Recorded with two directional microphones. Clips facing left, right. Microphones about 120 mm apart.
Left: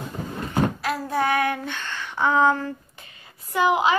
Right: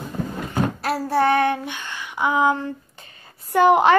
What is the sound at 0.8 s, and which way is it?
Child singing, 35° right (ahead or behind).